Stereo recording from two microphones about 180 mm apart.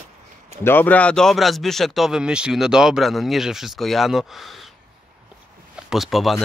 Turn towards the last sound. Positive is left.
turn(degrees=0)  # may be behind; listen again after turning